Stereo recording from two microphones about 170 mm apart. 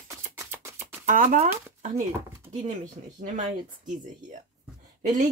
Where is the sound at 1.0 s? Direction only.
50° right (ahead or behind).